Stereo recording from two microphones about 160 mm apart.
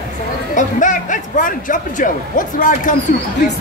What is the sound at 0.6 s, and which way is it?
A man's voice, 55° left (ahead or behind).